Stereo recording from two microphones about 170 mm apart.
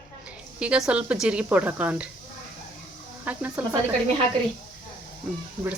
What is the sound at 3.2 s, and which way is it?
Speech, 10° right (ahead or behind).